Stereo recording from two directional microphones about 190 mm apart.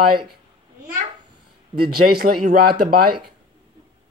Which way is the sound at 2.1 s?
50° right (ahead or behind).